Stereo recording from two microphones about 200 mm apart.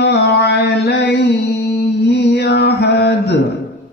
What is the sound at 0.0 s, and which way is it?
Music, 55° left (ahead or behind).